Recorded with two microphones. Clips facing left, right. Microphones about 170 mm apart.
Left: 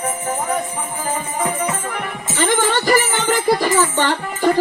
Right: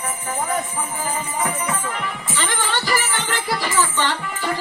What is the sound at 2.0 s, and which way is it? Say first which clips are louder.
Speech: left 4 dB; 45° left (ahead or behind).